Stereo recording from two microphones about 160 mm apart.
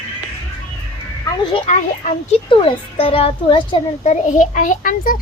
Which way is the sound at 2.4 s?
30° left (ahead or behind).